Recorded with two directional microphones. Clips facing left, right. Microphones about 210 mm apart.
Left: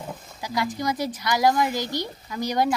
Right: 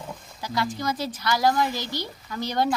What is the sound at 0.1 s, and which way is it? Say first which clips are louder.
Speech: left 1 dB; 20° left (ahead or behind).